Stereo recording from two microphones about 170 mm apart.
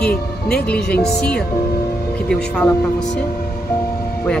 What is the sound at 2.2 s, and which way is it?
Speech, 5° left (ahead or behind).